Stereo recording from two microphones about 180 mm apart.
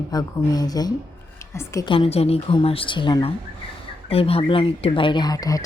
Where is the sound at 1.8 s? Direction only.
30° left (ahead or behind).